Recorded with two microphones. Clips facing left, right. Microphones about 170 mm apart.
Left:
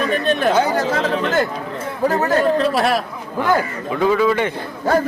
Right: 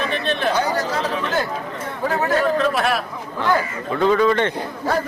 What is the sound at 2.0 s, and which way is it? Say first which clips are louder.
Speech: left 3 dB; 40° left (ahead or behind).